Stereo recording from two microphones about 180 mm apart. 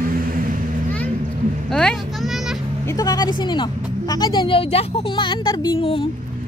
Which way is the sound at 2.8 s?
20° left (ahead or behind).